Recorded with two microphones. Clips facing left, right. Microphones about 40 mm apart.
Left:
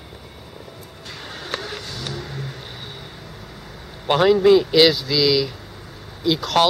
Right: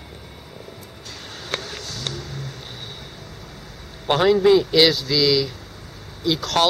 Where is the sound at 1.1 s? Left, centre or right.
Left.